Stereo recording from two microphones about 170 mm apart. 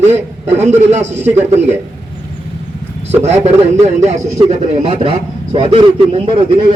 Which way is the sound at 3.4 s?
40° right (ahead or behind).